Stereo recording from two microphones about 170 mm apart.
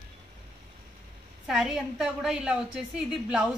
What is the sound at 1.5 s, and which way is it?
A woman's voice, centre (ahead or behind).